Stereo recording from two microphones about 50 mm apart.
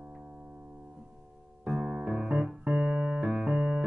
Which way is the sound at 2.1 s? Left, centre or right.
Centre.